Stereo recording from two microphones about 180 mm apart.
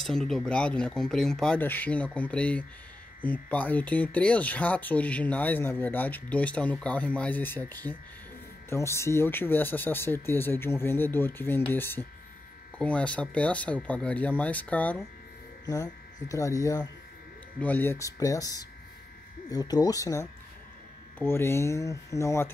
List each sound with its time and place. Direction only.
0.0 s speech: centre (ahead or behind)